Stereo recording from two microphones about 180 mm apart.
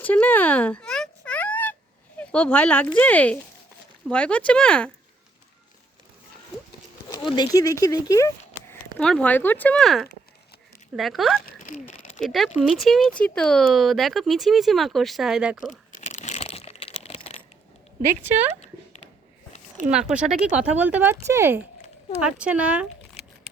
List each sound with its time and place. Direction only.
0.0 s a sound: 10° left (ahead or behind)
2.1 s speech: 5° left (ahead or behind)
7.1 s speech: 25° left (ahead or behind)
9.0 s speech: 5° left (ahead or behind)
11.4 s a sound: 45° left (ahead or behind)
12.5 s speech: centre (ahead or behind)
15.9 s crumpling: 40° left (ahead or behind)
19.9 s speech: 5° right (ahead or behind)